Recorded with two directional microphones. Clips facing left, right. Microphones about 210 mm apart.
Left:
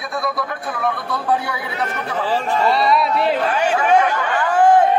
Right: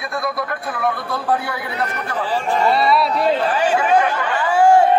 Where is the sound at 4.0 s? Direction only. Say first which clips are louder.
Left 1 dB; 10° right (ahead or behind).